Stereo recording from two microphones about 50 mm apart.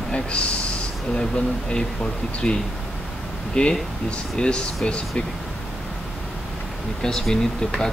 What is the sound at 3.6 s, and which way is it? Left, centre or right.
Speech, centre.